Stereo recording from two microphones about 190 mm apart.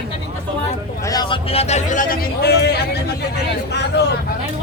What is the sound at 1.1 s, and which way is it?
A man's voice, 25° left (ahead or behind).